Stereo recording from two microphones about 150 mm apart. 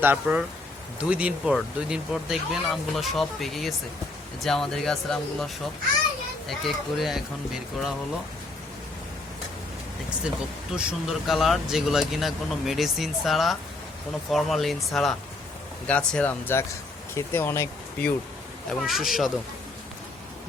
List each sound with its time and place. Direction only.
0.0 s speech: 10° right (ahead or behind)
6.5 s speech: centre (ahead or behind)
10.7 s speech: 5° right (ahead or behind); by 18.1 s 15° left (ahead or behind)
18.7 s speech: centre (ahead or behind)